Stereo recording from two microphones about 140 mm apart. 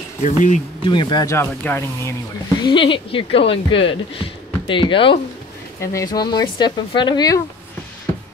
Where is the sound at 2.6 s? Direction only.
35° left (ahead or behind).